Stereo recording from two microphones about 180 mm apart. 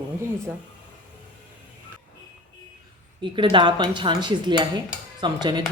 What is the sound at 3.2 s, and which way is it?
Cutlery, 25° right (ahead or behind).